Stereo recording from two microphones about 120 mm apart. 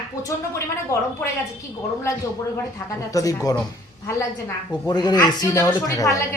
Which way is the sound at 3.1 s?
30° left (ahead or behind).